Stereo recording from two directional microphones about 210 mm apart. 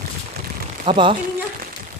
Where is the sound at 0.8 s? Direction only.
25° right (ahead or behind).